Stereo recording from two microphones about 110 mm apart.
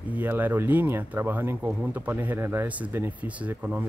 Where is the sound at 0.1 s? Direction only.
15° right (ahead or behind).